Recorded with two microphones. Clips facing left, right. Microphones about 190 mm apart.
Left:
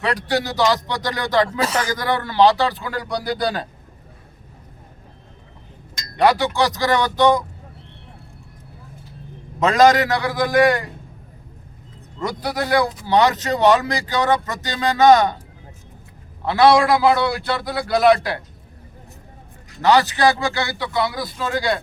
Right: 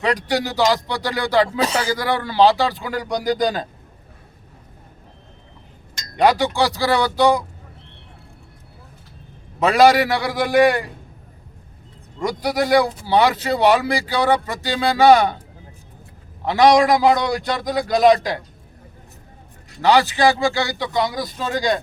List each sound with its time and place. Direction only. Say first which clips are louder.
0.0 s speech: right 1 dB; 15° right (ahead or behind)
6.1 s speech: even; 15° right (ahead or behind)
9.6 s speech: right 1 dB; 10° right (ahead or behind)
12.2 s speech: right 3 dB; 10° right (ahead or behind)
16.5 s speech: right 1 dB; 15° right (ahead or behind)
19.8 s speech: even; 15° right (ahead or behind)